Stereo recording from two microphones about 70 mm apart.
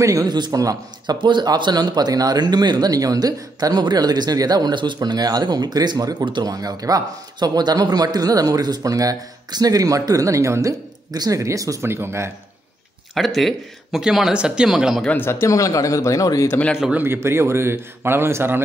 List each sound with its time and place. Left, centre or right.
0.0 s a man's voice: right
0.3 s a man's voice: right
11.8 s a man's voice: right
13.1 s speech: centre
15.1 s speech: left
15.5 s speech: left
16.9 s a man's voice: right